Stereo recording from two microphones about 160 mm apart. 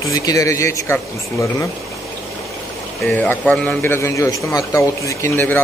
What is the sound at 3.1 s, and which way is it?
A man's voice, 10° left (ahead or behind).